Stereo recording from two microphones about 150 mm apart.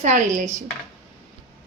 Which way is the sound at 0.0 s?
55° right (ahead or behind).